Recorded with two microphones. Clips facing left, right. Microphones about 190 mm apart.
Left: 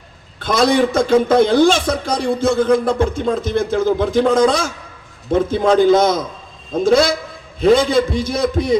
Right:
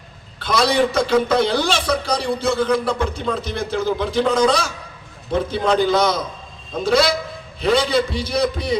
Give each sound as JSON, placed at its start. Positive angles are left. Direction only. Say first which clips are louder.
{"t": 0.3, "sound": "a man's voice", "louder": "left 3 dB", "side_deg": 50}